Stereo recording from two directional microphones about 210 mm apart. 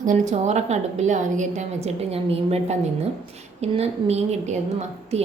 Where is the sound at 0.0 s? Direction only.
35° right (ahead or behind).